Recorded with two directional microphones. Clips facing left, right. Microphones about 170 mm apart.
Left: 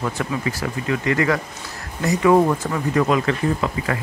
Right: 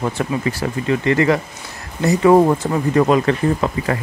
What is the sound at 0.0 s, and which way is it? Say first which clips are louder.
Speech: right 4 dB; 30° right (ahead or behind).